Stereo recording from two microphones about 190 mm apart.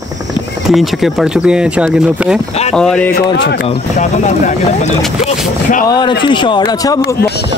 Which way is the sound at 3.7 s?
40° left (ahead or behind).